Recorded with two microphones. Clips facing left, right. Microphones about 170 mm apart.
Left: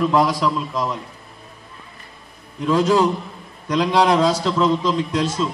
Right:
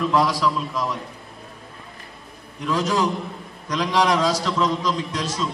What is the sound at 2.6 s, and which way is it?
A man's voice, 30° left (ahead or behind).